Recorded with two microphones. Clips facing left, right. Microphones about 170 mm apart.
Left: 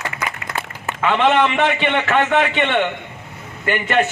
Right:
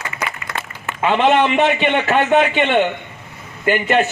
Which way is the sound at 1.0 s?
25° right (ahead or behind).